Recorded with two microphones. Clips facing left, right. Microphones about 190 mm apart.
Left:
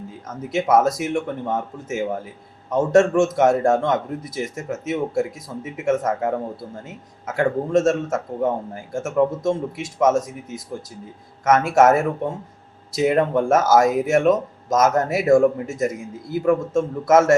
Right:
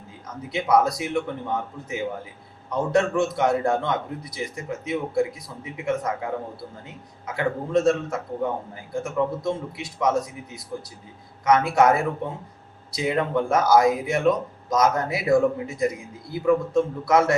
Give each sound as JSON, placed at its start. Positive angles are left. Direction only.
{"t": 0.5, "sound": "speech", "side_deg": 45}